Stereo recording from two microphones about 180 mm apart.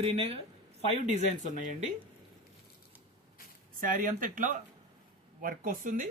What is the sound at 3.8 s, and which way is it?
Speech, 50° right (ahead or behind).